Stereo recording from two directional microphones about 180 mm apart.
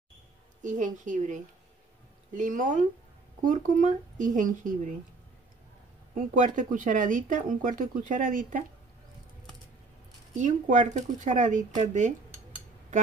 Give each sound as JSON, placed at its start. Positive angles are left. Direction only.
{"t": 0.6, "sound": "speech", "side_deg": -45}
{"t": 6.1, "sound": "speech", "side_deg": -45}
{"t": 10.3, "sound": "speech", "side_deg": -45}